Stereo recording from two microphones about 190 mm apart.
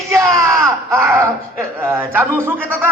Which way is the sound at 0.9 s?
15° right (ahead or behind).